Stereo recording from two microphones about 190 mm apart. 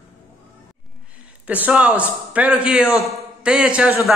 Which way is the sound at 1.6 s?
5° right (ahead or behind).